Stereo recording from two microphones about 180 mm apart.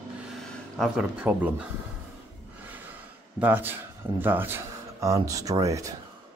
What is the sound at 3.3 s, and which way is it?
Speech, 10° right (ahead or behind).